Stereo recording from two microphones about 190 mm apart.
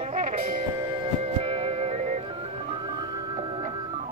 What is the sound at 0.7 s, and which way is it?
Music, 25° right (ahead or behind).